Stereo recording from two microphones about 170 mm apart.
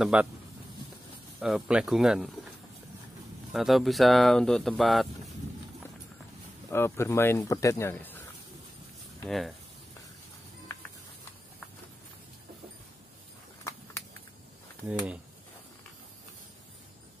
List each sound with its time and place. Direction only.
0.0 s speech: 5° right (ahead or behind)
1.4 s speech: 5° right (ahead or behind)
3.5 s speech: centre (ahead or behind)
6.7 s speech: 15° left (ahead or behind)
9.2 s speech: centre (ahead or behind)